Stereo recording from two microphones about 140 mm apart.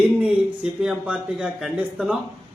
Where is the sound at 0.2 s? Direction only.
5° right (ahead or behind).